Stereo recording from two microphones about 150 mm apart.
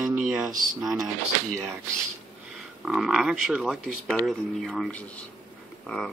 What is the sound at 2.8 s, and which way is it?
Speech, 5° right (ahead or behind).